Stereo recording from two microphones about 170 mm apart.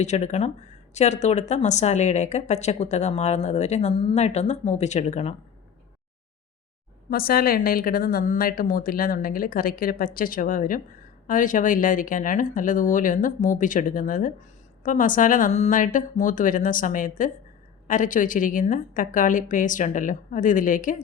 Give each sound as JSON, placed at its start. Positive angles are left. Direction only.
{"t": 0.0, "sound": "speech", "side_deg": 40}
{"t": 7.1, "sound": "a woman's voice", "side_deg": 60}